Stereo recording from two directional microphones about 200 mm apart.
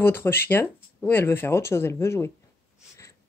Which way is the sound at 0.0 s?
10° left (ahead or behind).